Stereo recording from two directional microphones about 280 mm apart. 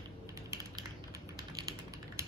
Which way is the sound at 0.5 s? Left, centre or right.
Centre.